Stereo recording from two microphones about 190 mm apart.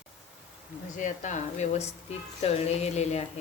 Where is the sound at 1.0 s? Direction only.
40° left (ahead or behind).